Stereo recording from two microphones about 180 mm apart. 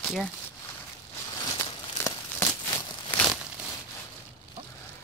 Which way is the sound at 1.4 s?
20° left (ahead or behind).